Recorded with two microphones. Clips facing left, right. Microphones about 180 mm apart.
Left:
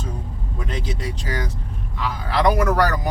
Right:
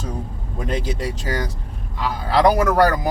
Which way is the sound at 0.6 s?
40° right (ahead or behind).